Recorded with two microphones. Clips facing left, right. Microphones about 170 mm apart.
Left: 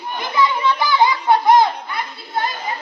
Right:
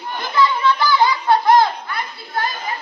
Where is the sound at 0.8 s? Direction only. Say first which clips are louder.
Even; 20° left (ahead or behind).